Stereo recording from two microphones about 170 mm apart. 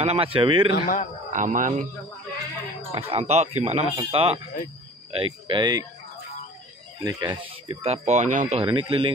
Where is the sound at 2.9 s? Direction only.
35° right (ahead or behind).